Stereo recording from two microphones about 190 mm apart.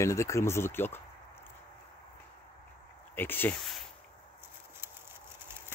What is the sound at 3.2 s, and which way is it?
Speech, 10° left (ahead or behind).